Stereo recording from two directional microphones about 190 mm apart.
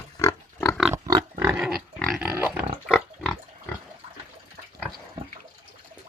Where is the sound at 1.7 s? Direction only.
Centre (ahead or behind).